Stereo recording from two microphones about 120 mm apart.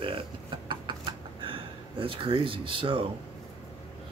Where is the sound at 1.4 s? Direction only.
45° right (ahead or behind).